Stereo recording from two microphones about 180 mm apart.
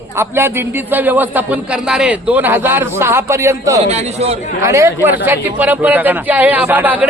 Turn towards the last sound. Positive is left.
turn(degrees=-10)  # may be behind; listen again after turning